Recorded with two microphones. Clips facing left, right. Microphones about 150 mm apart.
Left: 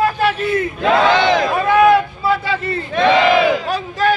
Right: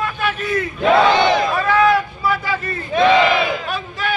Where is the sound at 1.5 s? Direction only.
20° left (ahead or behind).